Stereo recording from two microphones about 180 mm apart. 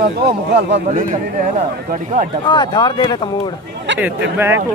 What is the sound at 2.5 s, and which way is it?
Speech, 25° left (ahead or behind).